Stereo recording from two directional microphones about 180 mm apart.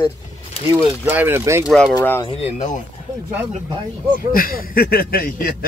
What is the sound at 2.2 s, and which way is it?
Speech, 35° left (ahead or behind).